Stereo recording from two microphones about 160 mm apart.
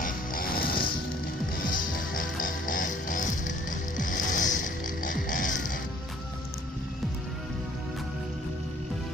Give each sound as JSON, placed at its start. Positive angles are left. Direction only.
{"t": 0.0, "sound": "music", "side_deg": 65}